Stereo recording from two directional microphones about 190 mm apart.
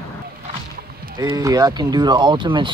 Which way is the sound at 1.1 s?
20° right (ahead or behind).